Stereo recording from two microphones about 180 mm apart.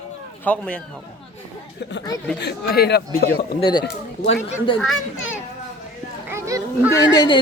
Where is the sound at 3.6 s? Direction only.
25° left (ahead or behind).